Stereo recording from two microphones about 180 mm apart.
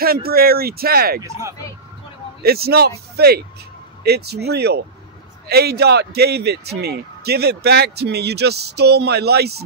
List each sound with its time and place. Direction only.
0.0 s a man's voice: 55° right (ahead or behind)
1.2 s speech: 15° right (ahead or behind)
2.4 s a man's voice: 60° right (ahead or behind)